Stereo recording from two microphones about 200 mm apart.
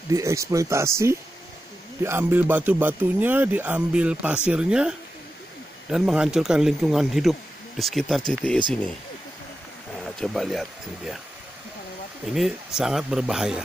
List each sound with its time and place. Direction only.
0.1 s speech: 15° right (ahead or behind); by 8.5 s centre (ahead or behind)
9.9 s speech: 5° left (ahead or behind)
12.4 s speech: centre (ahead or behind)